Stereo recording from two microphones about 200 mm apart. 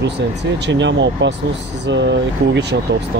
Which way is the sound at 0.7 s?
65° right (ahead or behind).